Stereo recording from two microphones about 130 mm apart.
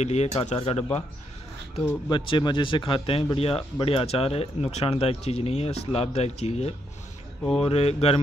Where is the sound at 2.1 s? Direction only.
35° left (ahead or behind).